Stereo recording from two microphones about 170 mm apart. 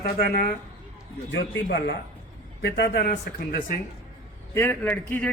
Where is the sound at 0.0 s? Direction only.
65° left (ahead or behind).